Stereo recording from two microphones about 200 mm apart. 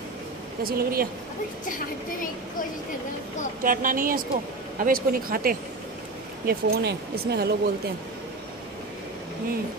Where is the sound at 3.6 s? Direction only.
45° right (ahead or behind).